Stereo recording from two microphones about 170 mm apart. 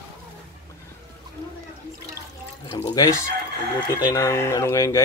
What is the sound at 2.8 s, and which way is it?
Speech, 20° left (ahead or behind).